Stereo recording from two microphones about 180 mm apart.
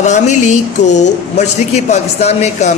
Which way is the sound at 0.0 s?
40° left (ahead or behind).